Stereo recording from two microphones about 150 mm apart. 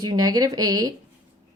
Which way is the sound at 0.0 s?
25° right (ahead or behind).